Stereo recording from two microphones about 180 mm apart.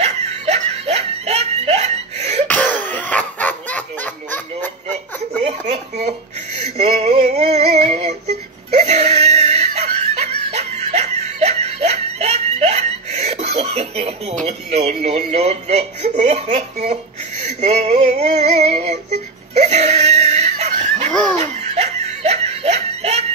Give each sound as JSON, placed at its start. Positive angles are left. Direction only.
{"t": 0.0, "sound": "laughter", "side_deg": -40}
{"t": 2.4, "sound": "cough", "side_deg": 5}
{"t": 5.4, "sound": "a sound", "side_deg": -35}
{"t": 7.9, "sound": "synthetic singing", "side_deg": -35}
{"t": 8.7, "sound": "laughter", "side_deg": -40}
{"t": 14.4, "sound": "a sound", "side_deg": -35}
{"t": 21.1, "sound": "laughter", "side_deg": 5}
{"t": 21.4, "sound": "laughter", "side_deg": -35}